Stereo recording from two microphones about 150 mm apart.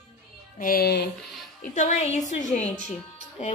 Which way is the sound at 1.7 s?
50° left (ahead or behind).